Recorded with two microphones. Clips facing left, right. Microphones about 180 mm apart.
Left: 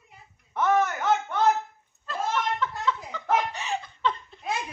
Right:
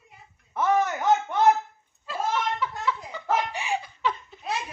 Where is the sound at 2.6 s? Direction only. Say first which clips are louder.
Left 1 dB; 10° right (ahead or behind).